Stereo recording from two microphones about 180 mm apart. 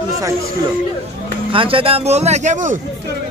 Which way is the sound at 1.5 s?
30° right (ahead or behind).